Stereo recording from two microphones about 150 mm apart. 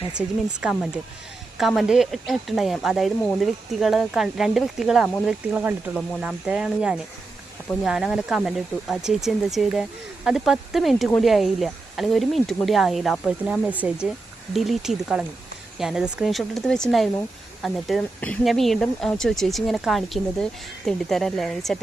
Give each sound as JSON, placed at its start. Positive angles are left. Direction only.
{"t": 0.2, "sound": "speech", "side_deg": -5}